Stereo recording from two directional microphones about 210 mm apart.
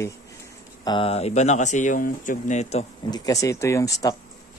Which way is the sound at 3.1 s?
15° left (ahead or behind).